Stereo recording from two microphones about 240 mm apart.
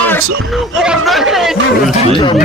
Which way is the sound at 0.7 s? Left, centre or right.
Centre.